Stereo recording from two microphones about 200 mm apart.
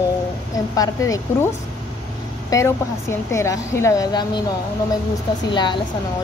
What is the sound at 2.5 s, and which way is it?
A woman's voice, 15° left (ahead or behind).